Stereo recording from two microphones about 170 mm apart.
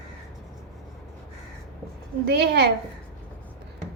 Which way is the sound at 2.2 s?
75° right (ahead or behind).